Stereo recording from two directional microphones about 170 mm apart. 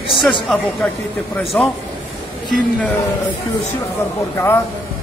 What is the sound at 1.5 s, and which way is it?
Speech, 10° left (ahead or behind).